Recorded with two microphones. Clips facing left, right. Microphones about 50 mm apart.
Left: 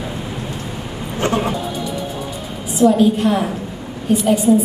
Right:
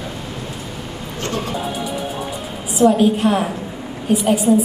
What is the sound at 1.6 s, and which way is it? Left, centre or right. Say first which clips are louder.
Music: even; centre.